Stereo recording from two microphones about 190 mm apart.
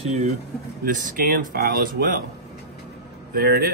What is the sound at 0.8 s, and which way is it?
Speech, 45° right (ahead or behind).